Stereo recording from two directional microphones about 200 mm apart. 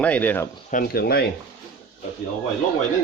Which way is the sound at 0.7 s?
50° left (ahead or behind).